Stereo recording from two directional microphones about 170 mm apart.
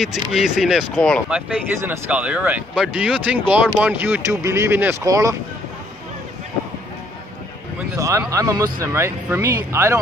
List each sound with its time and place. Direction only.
0.0 s speech: centre (ahead or behind)
1.3 s speech: 10° right (ahead or behind)
8.0 s speech: 20° right (ahead or behind)